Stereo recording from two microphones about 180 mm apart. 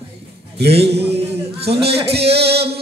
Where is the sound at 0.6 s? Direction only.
65° right (ahead or behind).